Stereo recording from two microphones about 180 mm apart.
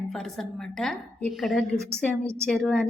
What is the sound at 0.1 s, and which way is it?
A woman's voice, centre (ahead or behind).